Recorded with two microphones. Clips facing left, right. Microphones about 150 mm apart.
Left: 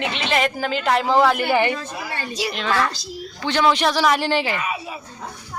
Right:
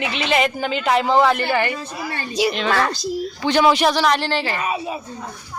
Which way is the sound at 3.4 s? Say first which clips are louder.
Right 2 dB; 10° right (ahead or behind).